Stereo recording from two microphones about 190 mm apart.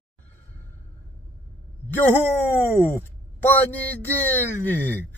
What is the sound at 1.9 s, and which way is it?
Speech, 10° left (ahead or behind).